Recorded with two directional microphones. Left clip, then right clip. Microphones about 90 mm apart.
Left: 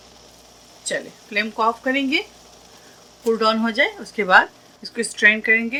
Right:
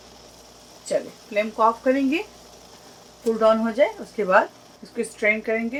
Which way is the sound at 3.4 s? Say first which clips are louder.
Right 2 dB; 90° left.